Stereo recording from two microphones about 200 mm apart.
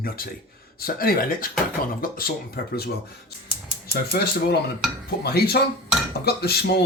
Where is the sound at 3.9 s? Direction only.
50° left (ahead or behind).